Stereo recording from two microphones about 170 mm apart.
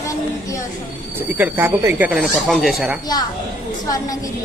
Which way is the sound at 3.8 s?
20° left (ahead or behind).